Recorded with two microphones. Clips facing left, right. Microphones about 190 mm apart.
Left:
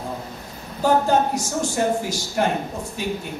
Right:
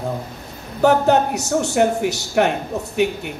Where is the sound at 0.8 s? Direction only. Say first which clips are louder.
Right 4 dB; 70° right (ahead or behind).